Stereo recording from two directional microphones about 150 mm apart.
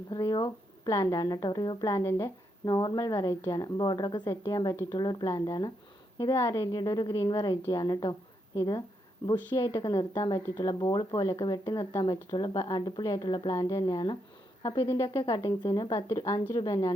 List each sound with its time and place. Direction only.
0.1 s a woman's voice: 30° left (ahead or behind)
15.3 s speech: 20° left (ahead or behind)